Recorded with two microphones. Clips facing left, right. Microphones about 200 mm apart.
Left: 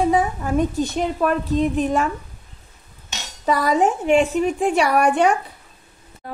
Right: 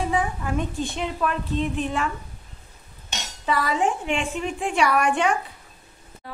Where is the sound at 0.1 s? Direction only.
40° left (ahead or behind).